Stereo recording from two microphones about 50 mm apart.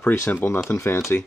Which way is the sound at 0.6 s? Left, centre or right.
Left.